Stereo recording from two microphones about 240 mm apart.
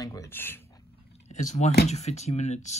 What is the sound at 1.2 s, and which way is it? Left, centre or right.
Speech, left.